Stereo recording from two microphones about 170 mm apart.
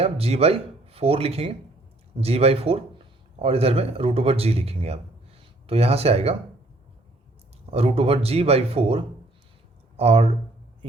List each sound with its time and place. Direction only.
0.0 s speech: 35° right (ahead or behind)
7.7 s speech: 35° right (ahead or behind)